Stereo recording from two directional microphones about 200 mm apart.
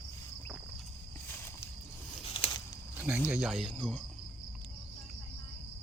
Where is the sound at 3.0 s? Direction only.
5° right (ahead or behind).